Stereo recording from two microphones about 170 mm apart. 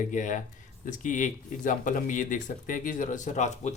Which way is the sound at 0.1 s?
50° left (ahead or behind).